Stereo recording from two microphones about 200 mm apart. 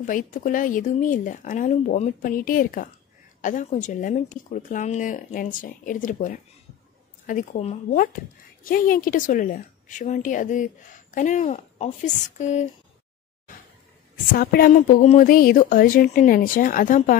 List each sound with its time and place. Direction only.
0.0 s speech: 40° left (ahead or behind)
14.3 s speech: 45° left (ahead or behind)